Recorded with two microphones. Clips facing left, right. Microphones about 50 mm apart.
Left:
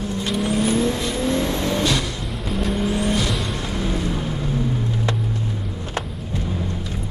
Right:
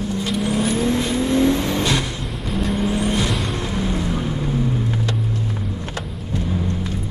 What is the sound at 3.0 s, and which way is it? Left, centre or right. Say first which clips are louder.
Vehicle: right 1 dB; centre.